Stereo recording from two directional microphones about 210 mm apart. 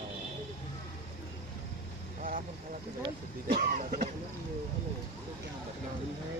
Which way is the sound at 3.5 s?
40° right (ahead or behind).